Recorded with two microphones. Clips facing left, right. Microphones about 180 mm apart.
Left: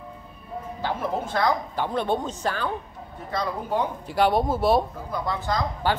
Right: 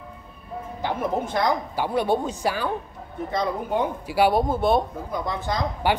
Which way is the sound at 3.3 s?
20° right (ahead or behind).